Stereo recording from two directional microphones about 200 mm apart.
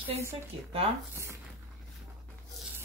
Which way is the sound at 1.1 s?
15° right (ahead or behind).